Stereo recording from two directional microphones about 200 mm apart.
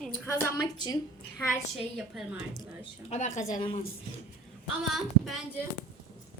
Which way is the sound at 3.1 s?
35° left (ahead or behind).